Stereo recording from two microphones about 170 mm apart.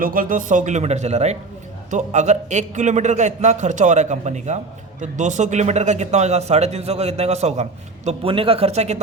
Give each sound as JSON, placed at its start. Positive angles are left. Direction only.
{"t": 0.0, "sound": "a man's voice", "side_deg": -55}